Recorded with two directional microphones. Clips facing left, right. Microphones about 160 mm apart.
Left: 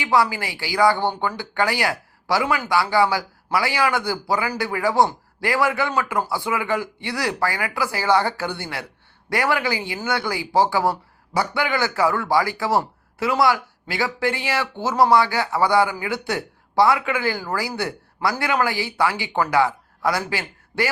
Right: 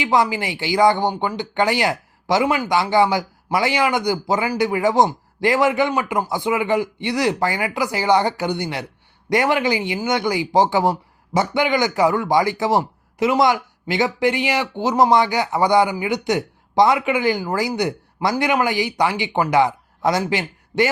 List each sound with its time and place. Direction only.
0.0 s a man's voice: 20° right (ahead or behind)